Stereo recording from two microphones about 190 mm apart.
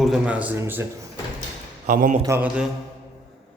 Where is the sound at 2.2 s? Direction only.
10° right (ahead or behind).